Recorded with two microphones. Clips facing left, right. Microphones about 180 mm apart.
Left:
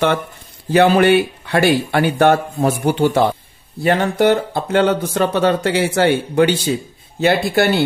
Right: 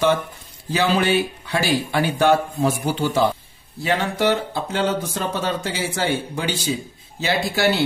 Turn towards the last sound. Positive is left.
turn(degrees=55)  # may be behind; listen again after turning